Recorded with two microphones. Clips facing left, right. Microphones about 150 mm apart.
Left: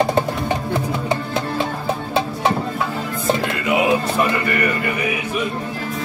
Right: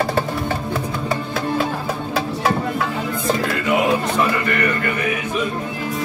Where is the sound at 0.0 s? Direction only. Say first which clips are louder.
Left 2 dB; 20° left (ahead or behind).